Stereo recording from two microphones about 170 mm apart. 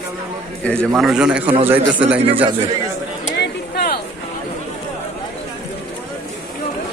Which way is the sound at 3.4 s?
70° left (ahead or behind).